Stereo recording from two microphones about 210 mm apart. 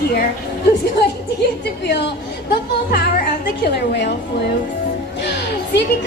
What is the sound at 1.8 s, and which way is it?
Speech, 55° left (ahead or behind).